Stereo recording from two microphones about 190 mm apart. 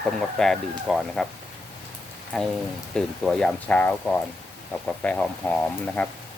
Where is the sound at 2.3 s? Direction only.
Centre (ahead or behind).